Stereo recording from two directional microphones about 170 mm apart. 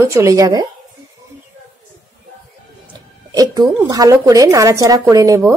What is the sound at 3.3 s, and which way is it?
A woman's voice, 20° right (ahead or behind).